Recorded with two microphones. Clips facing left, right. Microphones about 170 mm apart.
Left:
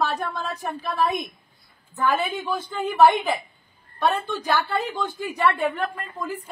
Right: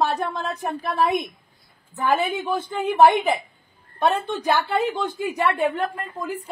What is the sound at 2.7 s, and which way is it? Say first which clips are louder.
Speech: right 1 dB; 20° right (ahead or behind).